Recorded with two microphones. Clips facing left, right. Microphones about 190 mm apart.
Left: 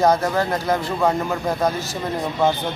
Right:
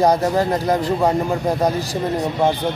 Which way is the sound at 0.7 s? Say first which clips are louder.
Right 3 dB; 35° right (ahead or behind).